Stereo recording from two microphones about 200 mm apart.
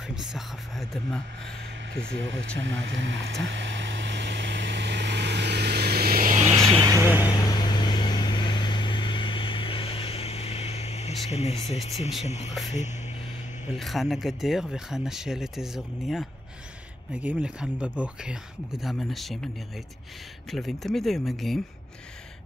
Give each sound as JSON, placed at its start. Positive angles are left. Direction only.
{"t": 0.1, "sound": "speech", "side_deg": -5}
{"t": 2.1, "sound": "speech", "side_deg": -65}
{"t": 3.4, "sound": "vehicle", "side_deg": -65}
{"t": 6.5, "sound": "vehicle", "side_deg": -15}
{"t": 7.2, "sound": "vehicle", "side_deg": 20}
{"t": 11.2, "sound": "speech", "side_deg": 35}
{"t": 13.7, "sound": "speech", "side_deg": 0}
{"t": 20.5, "sound": "speech", "side_deg": 0}